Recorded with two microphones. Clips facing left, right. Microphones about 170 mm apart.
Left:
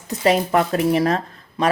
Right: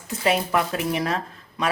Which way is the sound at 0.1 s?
40° left (ahead or behind).